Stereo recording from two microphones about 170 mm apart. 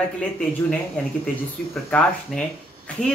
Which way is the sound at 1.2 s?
5° left (ahead or behind).